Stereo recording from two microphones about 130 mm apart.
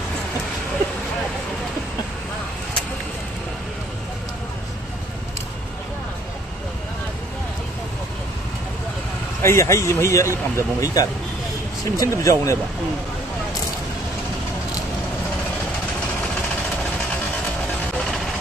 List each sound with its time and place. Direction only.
9.4 s speech: 20° left (ahead or behind)